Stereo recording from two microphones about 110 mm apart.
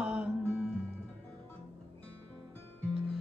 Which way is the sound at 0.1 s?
15° right (ahead or behind).